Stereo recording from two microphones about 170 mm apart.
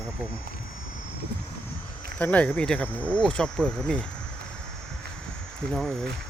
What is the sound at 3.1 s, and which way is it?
Speech, 5° left (ahead or behind).